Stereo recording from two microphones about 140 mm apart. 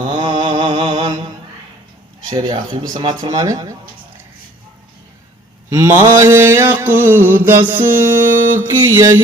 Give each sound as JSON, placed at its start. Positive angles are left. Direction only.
{"t": 0.0, "sound": "mantra", "side_deg": -35}
{"t": 2.3, "sound": "speech", "side_deg": -30}
{"t": 5.6, "sound": "mantra", "side_deg": -20}